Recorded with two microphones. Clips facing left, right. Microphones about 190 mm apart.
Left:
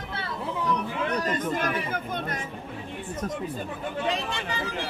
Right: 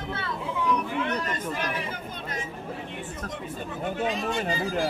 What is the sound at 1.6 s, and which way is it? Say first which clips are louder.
Speech: left 3 dB; 55° left (ahead or behind).